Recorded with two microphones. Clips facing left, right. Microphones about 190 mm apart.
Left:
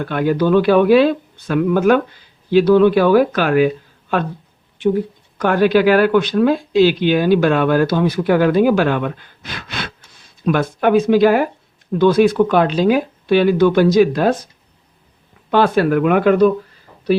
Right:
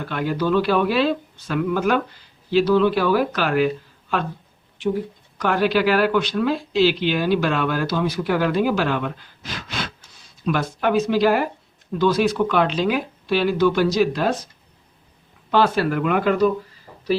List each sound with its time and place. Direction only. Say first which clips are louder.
0.0 s speech: left 6 dB; 55° left (ahead or behind)
5.4 s speech: left 6 dB; 50° left (ahead or behind)
15.4 s speech: left 5 dB; 55° left (ahead or behind)